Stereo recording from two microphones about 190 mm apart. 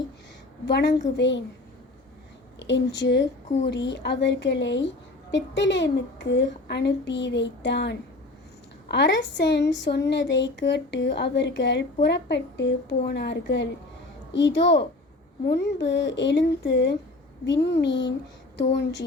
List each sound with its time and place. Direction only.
0.6 s a woman's voice: 65° left (ahead or behind)
2.6 s a woman's voice: 70° left (ahead or behind)